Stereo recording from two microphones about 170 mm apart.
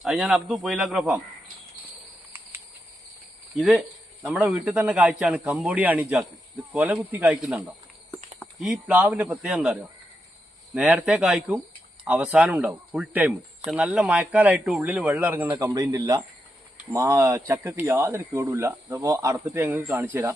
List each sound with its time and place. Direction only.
0.0 s a man's voice: 5° right (ahead or behind)
3.6 s a man's voice: centre (ahead or behind)
10.8 s a man's voice: 5° right (ahead or behind)